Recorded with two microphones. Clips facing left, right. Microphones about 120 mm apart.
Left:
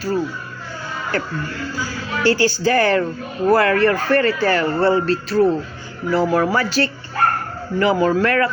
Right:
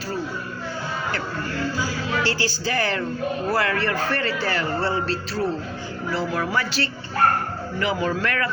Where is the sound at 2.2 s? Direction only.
50° left (ahead or behind).